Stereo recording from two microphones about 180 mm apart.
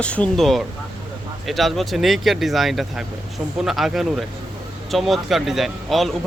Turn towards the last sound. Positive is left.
turn(degrees=0)  # may be behind; listen again after turning